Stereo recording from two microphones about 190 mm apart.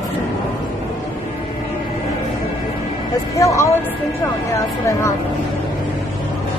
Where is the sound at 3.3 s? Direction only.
15° left (ahead or behind).